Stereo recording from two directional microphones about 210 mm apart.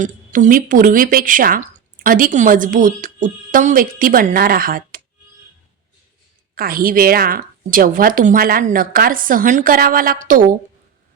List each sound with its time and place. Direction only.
0.0 s speech: 35° right (ahead or behind)
6.6 s a woman's voice: 45° right (ahead or behind)